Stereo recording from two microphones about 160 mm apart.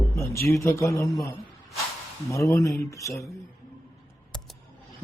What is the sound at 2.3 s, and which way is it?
Speech, 20° left (ahead or behind).